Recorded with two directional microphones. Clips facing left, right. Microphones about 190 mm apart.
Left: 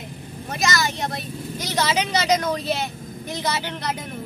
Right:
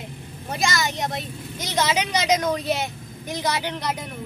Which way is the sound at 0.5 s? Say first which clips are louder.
Left 1 dB; 25° right (ahead or behind).